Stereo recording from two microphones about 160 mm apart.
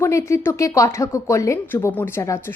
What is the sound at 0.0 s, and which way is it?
A woman's voice, 20° left (ahead or behind).